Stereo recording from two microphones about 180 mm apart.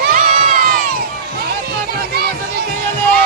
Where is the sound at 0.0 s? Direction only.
55° right (ahead or behind).